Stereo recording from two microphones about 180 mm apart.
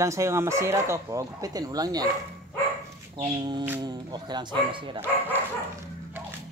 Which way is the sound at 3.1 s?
35° right (ahead or behind).